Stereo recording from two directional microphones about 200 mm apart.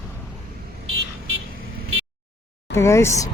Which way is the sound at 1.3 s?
90° right.